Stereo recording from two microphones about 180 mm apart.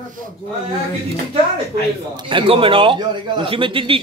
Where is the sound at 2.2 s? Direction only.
30° right (ahead or behind).